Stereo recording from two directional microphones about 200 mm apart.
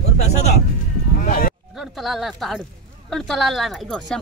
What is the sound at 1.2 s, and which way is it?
Sheep, 45° left (ahead or behind).